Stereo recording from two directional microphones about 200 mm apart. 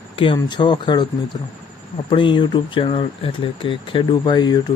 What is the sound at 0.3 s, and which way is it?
Speech, 20° left (ahead or behind).